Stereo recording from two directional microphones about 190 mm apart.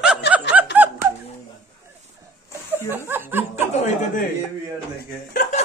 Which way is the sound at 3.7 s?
40° left (ahead or behind).